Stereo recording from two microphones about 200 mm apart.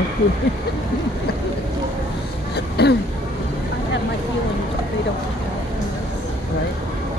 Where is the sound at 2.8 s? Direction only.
55° left (ahead or behind).